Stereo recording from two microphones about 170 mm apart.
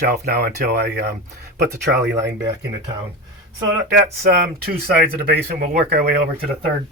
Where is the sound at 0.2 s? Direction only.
65° right (ahead or behind).